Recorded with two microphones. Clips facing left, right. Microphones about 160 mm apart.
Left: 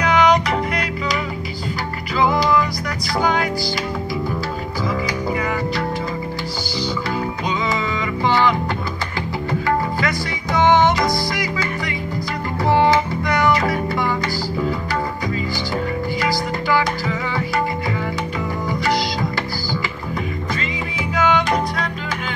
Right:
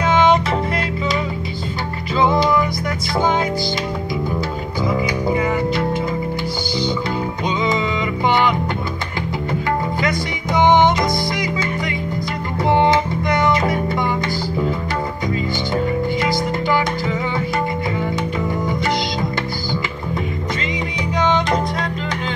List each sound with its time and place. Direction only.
0.0 s music: 25° right (ahead or behind)
2.1 s music: 25° right (ahead or behind)
4.8 s music: 20° right (ahead or behind)
8.3 s music: 20° right (ahead or behind)
12.6 s music: 20° right (ahead or behind)
15.7 s music: 20° right (ahead or behind)
21.2 s music: 20° right (ahead or behind)